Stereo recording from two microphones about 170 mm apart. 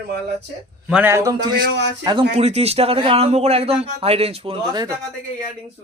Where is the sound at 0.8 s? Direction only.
10° right (ahead or behind).